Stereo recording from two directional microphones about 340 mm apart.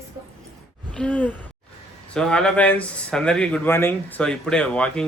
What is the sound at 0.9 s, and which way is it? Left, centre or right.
Gasp, centre.